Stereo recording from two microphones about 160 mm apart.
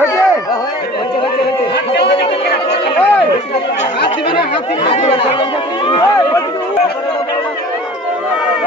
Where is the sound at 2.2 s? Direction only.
35° left (ahead or behind).